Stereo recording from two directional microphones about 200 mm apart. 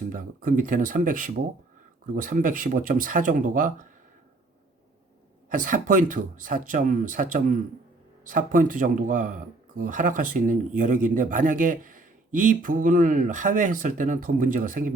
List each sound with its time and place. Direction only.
0.1 s speech: 40° right (ahead or behind)
5.5 s a man's voice: 40° right (ahead or behind)